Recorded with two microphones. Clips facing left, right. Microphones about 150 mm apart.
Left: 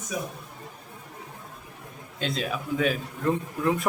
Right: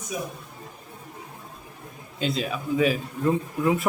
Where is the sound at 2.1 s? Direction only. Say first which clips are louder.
Right 2 dB; centre (ahead or behind).